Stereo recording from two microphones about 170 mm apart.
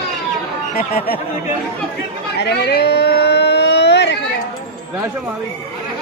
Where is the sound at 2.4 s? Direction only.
80° left.